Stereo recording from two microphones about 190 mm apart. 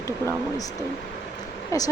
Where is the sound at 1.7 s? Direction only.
15° left (ahead or behind).